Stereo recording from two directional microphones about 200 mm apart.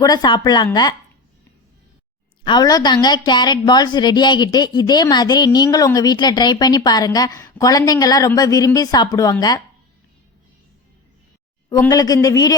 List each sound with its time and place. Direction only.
0.0 s a woman's voice: 20° left (ahead or behind)
2.4 s a woman's voice: 20° left (ahead or behind)
11.7 s a man's voice: 15° left (ahead or behind)